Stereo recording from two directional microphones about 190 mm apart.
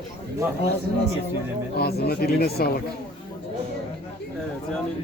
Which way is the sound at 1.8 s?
55° left (ahead or behind).